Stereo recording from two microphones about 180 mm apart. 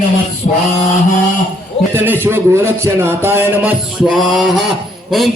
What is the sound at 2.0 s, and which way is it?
A man's voice, 10° right (ahead or behind).